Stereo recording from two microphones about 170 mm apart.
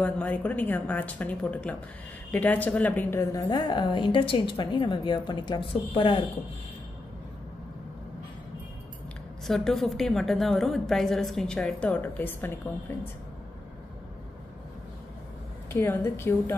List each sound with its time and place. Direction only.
0.0 s a woman's voice: 10° left (ahead or behind)
3.4 s a woman's voice: 25° left (ahead or behind)
9.5 s a woman's voice: centre (ahead or behind)
15.7 s a woman's voice: 15° left (ahead or behind)